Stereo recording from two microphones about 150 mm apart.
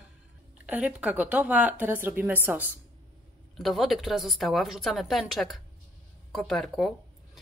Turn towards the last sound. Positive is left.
turn(degrees=5)  # may be behind; listen again after turning